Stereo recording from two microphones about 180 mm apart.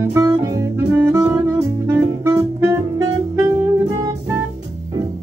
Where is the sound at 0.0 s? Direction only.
15° right (ahead or behind).